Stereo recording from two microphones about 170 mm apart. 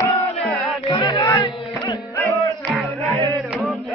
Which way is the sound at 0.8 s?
25° left (ahead or behind).